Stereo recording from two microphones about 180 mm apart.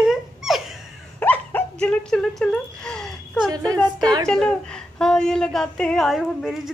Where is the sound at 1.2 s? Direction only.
10° left (ahead or behind).